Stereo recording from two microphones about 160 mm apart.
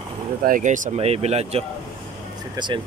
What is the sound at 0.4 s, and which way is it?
Speech, 55° right (ahead or behind).